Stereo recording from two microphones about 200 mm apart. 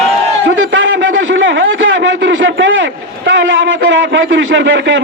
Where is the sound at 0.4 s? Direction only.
65° right (ahead or behind).